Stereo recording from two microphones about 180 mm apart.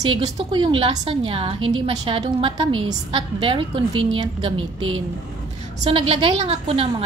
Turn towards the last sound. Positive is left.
turn(degrees=-30)  # may be behind; listen again after turning